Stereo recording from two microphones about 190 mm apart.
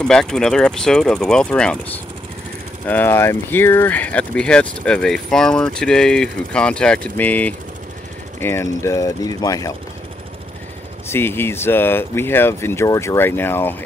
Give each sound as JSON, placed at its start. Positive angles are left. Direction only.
{"t": 0.0, "sound": "speech", "side_deg": 5}
{"t": 2.9, "sound": "speech", "side_deg": 10}
{"t": 11.1, "sound": "speech", "side_deg": 10}